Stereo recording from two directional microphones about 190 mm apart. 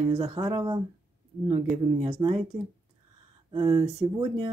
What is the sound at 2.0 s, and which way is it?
Speech, 30° right (ahead or behind).